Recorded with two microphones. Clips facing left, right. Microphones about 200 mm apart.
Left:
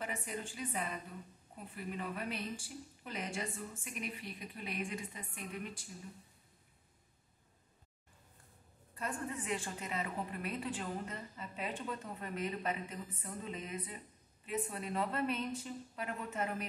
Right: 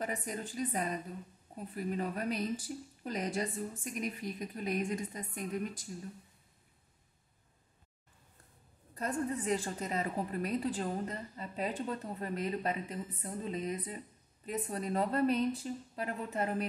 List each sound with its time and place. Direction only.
0.0 s a woman's voice: 40° right (ahead or behind)
8.9 s a woman's voice: 40° right (ahead or behind)